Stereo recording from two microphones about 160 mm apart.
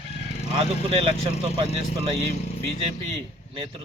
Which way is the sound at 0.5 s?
35° right (ahead or behind).